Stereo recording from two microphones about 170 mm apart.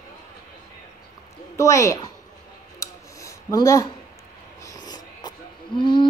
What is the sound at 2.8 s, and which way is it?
Rub, 20° left (ahead or behind).